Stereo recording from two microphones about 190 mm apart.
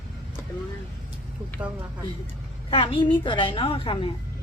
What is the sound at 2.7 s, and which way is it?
A woman's voice, 30° left (ahead or behind).